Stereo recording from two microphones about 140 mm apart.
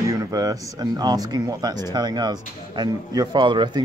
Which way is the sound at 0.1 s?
25° right (ahead or behind).